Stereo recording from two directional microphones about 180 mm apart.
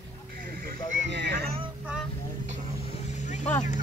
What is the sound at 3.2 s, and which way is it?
Vehicle, 40° left (ahead or behind).